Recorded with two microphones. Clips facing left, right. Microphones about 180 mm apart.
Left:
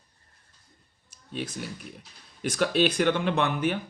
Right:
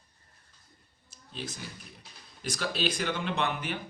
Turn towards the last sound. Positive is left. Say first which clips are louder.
# left 6 dB
turn(degrees=50)  # may be behind; listen again after turning